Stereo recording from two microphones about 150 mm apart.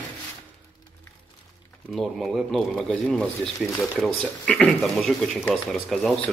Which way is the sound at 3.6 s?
20° left (ahead or behind).